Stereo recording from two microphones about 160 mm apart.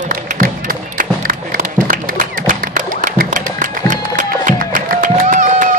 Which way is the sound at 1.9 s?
55° right (ahead or behind).